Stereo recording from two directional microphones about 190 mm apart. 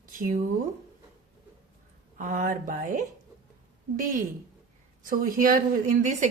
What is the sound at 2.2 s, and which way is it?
Speech, 45° right (ahead or behind).